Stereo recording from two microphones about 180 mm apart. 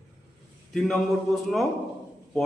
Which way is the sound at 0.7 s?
Centre (ahead or behind).